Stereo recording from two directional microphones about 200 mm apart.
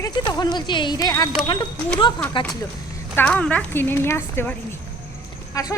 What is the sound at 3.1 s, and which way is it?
Speech, 5° left (ahead or behind).